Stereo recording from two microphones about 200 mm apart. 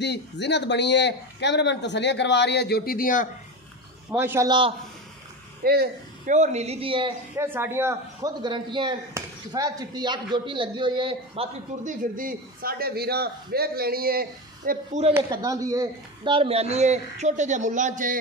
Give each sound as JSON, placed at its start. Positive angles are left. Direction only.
{"t": 0.0, "sound": "a man's voice", "side_deg": 60}
{"t": 4.1, "sound": "a man's voice", "side_deg": -10}
{"t": 5.6, "sound": "speech", "side_deg": -50}
{"t": 6.3, "sound": "speech", "side_deg": -35}
{"t": 7.3, "sound": "a man's voice", "side_deg": -10}
{"t": 11.8, "sound": "a man's voice", "side_deg": -40}
{"t": 14.7, "sound": "speech", "side_deg": -35}
{"t": 15.1, "sound": "speech", "side_deg": -20}